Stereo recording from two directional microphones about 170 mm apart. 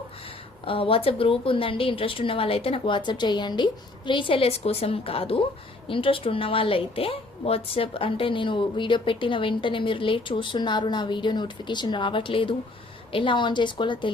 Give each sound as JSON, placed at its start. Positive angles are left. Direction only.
{"t": 0.6, "sound": "a woman's voice", "side_deg": 30}